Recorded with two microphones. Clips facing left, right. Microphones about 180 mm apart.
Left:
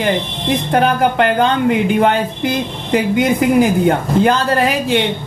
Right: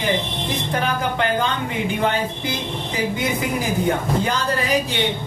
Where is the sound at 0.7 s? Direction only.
60° left (ahead or behind).